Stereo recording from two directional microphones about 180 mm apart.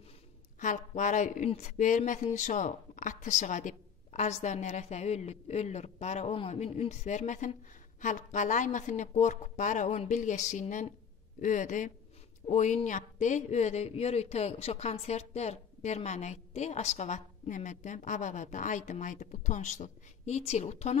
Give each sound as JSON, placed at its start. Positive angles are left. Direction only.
{"t": 0.6, "sound": "speech", "side_deg": 45}